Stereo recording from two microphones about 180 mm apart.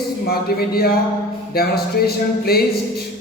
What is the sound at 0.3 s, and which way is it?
Speech, 60° left (ahead or behind).